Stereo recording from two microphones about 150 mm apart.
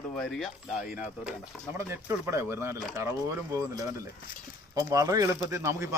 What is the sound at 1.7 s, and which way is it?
Speech, 20° right (ahead or behind).